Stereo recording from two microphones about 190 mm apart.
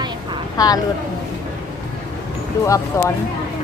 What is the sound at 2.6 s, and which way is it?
Speech, 15° left (ahead or behind).